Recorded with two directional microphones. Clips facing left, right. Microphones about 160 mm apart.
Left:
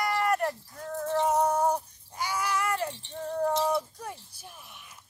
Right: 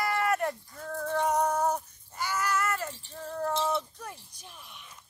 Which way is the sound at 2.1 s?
10° left (ahead or behind).